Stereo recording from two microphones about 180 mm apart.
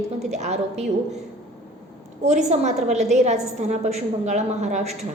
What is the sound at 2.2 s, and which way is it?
A woman's voice, 40° right (ahead or behind).